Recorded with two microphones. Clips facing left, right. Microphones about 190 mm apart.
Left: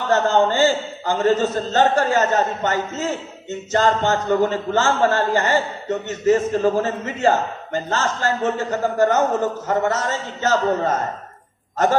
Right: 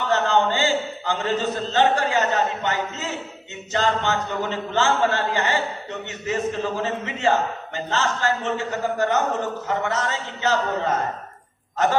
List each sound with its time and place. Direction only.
0.1 s a man's voice: 40° left (ahead or behind)